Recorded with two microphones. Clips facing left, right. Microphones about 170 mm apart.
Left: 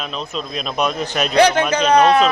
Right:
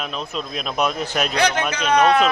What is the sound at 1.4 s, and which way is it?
Speech, 30° left (ahead or behind).